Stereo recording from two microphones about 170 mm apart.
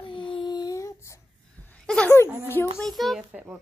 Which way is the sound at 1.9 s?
10° left (ahead or behind).